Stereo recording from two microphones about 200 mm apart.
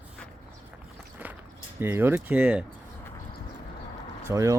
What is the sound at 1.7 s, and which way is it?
Speech, 10° right (ahead or behind).